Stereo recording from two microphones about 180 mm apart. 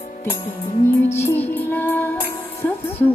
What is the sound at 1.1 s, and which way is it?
Music, 15° left (ahead or behind).